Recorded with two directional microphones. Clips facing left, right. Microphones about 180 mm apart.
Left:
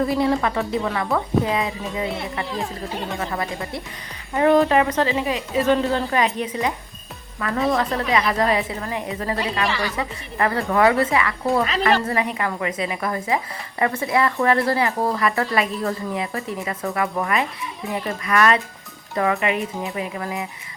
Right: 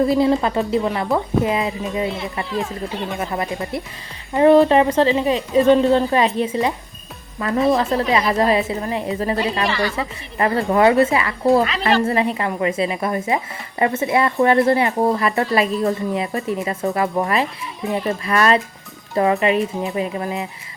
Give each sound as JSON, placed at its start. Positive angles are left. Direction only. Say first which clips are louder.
{"t": 0.0, "sound": "a woman's voice", "louder": "right 4 dB", "side_deg": -25}